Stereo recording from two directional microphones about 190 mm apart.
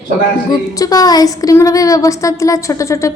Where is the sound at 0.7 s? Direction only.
20° left (ahead or behind).